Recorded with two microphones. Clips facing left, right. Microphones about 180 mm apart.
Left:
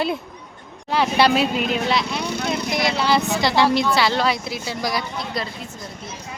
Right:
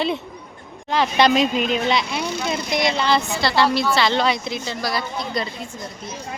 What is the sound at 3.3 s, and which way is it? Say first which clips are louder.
Speech: left 1 dB; 15° left (ahead or behind).